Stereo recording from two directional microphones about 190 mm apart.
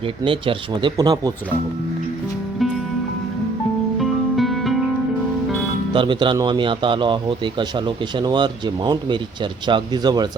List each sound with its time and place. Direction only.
0.0 s speech: 30° right (ahead or behind)
3.9 s music: centre (ahead or behind)
5.9 s speech: 25° right (ahead or behind)